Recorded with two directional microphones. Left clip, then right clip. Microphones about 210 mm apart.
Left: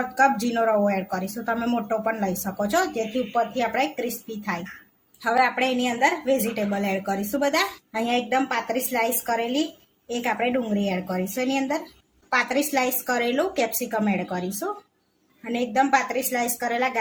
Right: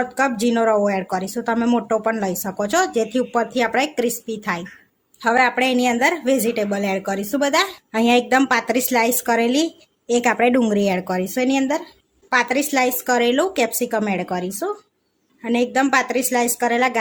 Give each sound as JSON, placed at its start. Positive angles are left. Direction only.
{"t": 0.2, "sound": "a woman's voice", "side_deg": -30}